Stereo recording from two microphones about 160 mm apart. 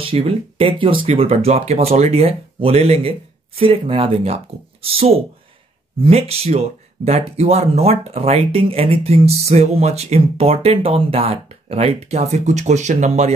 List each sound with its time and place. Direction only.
0.0 s speech: 35° right (ahead or behind)